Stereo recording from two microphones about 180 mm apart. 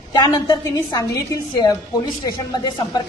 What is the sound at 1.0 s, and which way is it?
A woman's voice, 20° left (ahead or behind).